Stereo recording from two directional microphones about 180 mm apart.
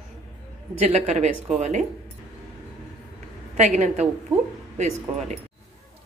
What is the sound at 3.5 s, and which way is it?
Speech, 40° right (ahead or behind).